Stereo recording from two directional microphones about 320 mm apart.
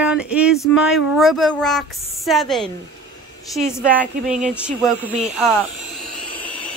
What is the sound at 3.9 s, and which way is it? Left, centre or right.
Speech, centre.